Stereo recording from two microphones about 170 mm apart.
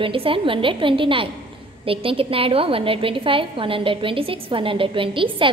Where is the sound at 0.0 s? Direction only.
30° right (ahead or behind).